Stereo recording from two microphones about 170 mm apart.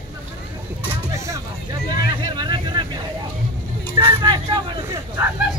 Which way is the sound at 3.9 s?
25° right (ahead or behind).